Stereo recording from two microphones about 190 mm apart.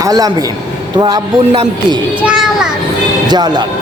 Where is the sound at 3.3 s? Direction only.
20° right (ahead or behind).